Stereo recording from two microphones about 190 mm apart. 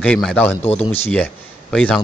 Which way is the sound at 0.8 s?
30° left (ahead or behind).